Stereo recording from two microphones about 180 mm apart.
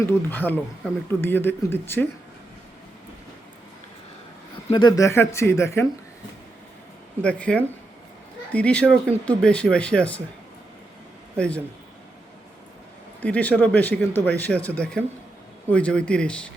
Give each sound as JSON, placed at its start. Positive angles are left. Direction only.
{"t": 0.0, "sound": "speech", "side_deg": 10}
{"t": 4.7, "sound": "speech", "side_deg": 25}
{"t": 7.2, "sound": "speech", "side_deg": 5}
{"t": 11.3, "sound": "speech", "side_deg": 5}
{"t": 13.2, "sound": "speech", "side_deg": 5}